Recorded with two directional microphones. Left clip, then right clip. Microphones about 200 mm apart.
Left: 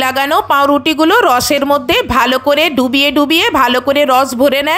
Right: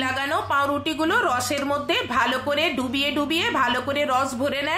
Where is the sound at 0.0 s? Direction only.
45° left (ahead or behind).